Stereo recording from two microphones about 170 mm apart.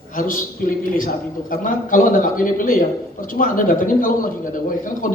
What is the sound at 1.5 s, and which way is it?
A man's voice, 55° left (ahead or behind).